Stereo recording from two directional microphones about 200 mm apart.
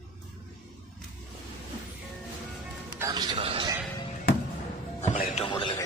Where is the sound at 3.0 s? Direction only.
20° right (ahead or behind).